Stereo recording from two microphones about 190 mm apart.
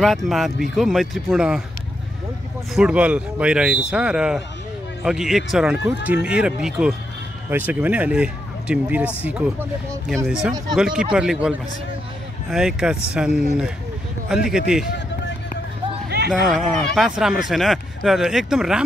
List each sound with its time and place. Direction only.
0.0 s speech: centre (ahead or behind)
2.7 s speech: 5° right (ahead or behind)
16.3 s speech: centre (ahead or behind)